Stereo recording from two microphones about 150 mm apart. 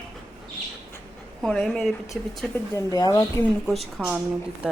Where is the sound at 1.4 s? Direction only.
5° left (ahead or behind).